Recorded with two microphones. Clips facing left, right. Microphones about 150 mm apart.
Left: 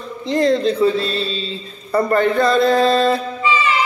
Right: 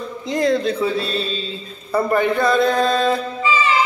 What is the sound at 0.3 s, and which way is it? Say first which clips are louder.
Speech: left 3 dB; centre (ahead or behind).